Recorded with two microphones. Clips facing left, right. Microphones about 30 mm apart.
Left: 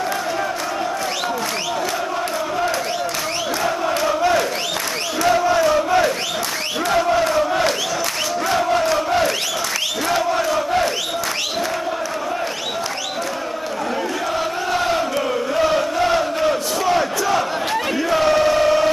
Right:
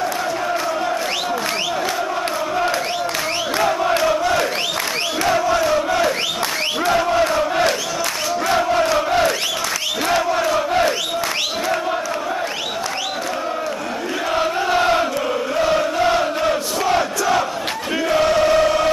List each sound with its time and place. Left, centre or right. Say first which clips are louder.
5.3 s crowd: left 1 dB; centre
7.2 s crowd: right 1 dB; centre
8.7 s crowd: right 1 dB; centre
10.0 s battle cry: right 2 dB; centre
14.3 s chant: right 6 dB; centre
15.5 s crowd: even; centre
18.4 s choir: even; centre